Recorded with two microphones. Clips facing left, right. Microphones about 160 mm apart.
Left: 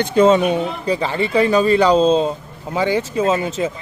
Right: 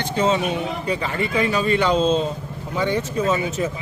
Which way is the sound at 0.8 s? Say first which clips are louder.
Left 4 dB; 35° left (ahead or behind).